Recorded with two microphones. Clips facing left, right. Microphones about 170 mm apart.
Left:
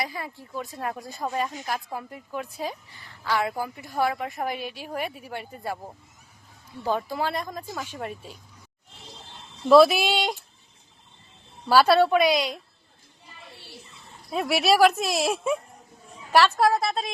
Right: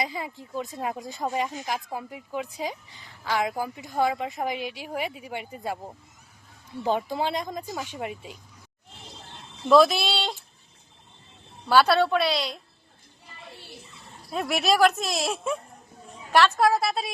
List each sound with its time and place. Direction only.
0.0 s speech: 20° right (ahead or behind)
9.6 s speech: 5° left (ahead or behind)
11.7 s speech: 5° left (ahead or behind)
14.3 s a woman's voice: centre (ahead or behind)